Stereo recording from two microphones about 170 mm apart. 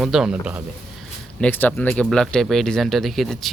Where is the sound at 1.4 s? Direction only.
10° left (ahead or behind).